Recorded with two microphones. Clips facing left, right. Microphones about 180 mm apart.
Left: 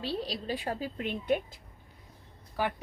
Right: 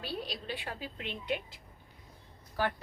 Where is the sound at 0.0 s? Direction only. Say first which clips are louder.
Left 5 dB; 30° left (ahead or behind); by 1.5 s 50° left (ahead or behind).